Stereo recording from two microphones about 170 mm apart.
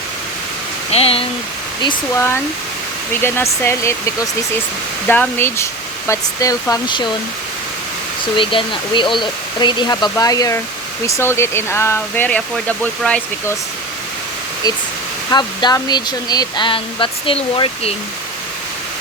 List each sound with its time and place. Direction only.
0.9 s speech: 35° left (ahead or behind)
2.1 s speech: 15° left (ahead or behind)
8.4 s speech: 30° left (ahead or behind); by 13.2 s 5° left (ahead or behind)
15.3 s speech: 25° left (ahead or behind)